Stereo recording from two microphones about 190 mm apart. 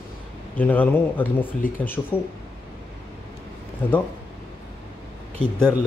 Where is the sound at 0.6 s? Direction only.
10° left (ahead or behind).